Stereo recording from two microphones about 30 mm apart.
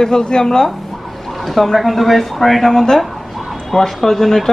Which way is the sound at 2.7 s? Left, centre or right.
Centre.